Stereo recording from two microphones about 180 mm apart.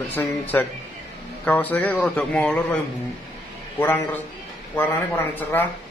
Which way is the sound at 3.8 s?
10° left (ahead or behind).